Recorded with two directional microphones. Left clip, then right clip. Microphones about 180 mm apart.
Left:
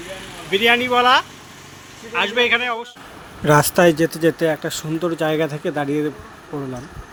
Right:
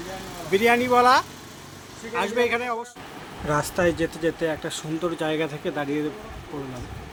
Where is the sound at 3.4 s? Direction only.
50° left (ahead or behind); by 6.0 s 30° left (ahead or behind).